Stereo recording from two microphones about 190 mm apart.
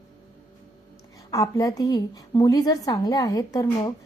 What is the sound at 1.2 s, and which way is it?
A woman's voice, 20° left (ahead or behind).